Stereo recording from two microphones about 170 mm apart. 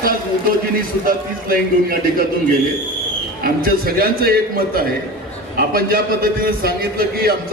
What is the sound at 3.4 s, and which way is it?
A man's voice, 60° right (ahead or behind).